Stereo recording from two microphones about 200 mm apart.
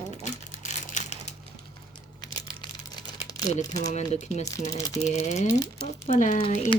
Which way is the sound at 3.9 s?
35° left (ahead or behind).